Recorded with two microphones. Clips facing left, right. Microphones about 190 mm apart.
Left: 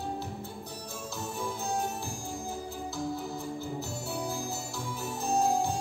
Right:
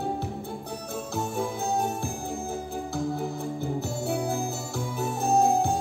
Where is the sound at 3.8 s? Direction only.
55° right (ahead or behind).